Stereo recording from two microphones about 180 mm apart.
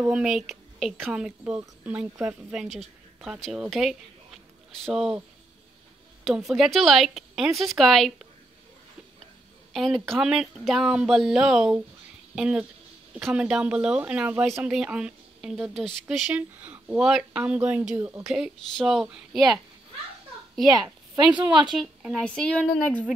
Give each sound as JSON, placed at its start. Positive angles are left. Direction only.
{"t": 0.1, "sound": "a woman's voice", "side_deg": -5}
{"t": 4.8, "sound": "speech", "side_deg": 0}
{"t": 6.2, "sound": "speech", "side_deg": 0}
{"t": 9.7, "sound": "speech", "side_deg": 0}
{"t": 20.6, "sound": "a woman's voice", "side_deg": -20}
{"t": 21.6, "sound": "speech", "side_deg": 0}